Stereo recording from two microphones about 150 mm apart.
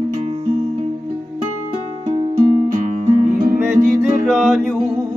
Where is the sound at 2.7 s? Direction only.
60° right (ahead or behind).